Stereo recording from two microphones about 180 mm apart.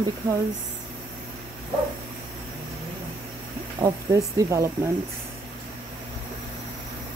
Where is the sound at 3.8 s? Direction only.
20° right (ahead or behind).